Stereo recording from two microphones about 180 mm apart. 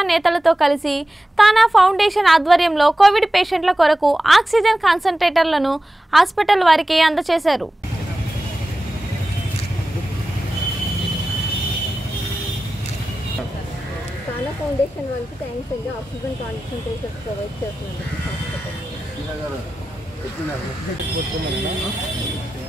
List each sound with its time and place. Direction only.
0.0 s a woman's voice: centre (ahead or behind)